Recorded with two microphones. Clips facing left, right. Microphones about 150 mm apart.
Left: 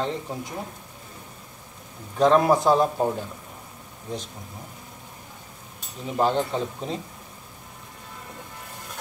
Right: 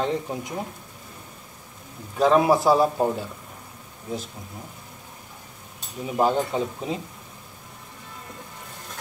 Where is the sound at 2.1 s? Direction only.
5° right (ahead or behind).